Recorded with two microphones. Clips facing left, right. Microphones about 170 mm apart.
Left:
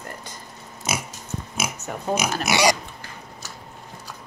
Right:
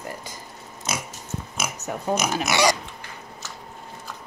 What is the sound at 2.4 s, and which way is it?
Pig, 10° left (ahead or behind).